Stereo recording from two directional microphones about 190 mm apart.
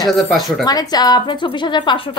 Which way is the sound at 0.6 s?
20° left (ahead or behind).